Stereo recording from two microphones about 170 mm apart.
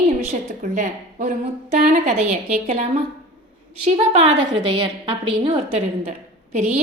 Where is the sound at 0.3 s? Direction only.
45° right (ahead or behind).